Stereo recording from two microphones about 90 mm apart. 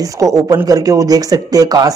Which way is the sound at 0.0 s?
40° right (ahead or behind).